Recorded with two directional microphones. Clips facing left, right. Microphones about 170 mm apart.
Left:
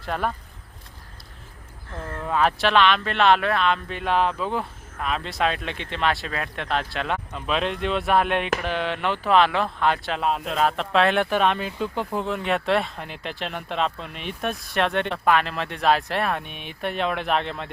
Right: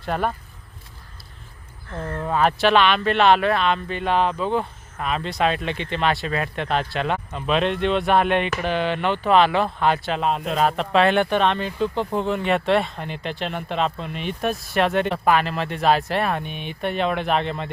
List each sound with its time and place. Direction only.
0.0 s speech: centre (ahead or behind)
1.9 s speech: 40° right (ahead or behind)
2.3 s speech: centre (ahead or behind)